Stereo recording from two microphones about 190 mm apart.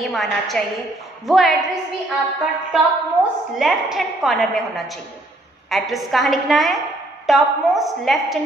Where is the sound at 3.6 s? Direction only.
Centre (ahead or behind).